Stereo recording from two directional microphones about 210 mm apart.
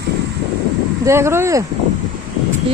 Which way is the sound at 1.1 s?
10° right (ahead or behind).